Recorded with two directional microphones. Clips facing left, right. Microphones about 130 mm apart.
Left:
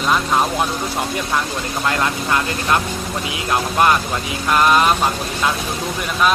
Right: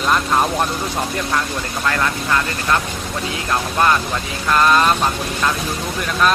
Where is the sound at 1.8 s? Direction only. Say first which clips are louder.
Even; 20° left (ahead or behind).